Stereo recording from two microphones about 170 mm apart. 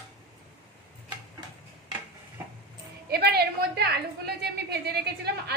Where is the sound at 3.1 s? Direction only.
70° right (ahead or behind).